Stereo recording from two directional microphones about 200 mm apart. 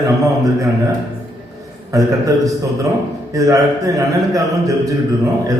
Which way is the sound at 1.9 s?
15° right (ahead or behind).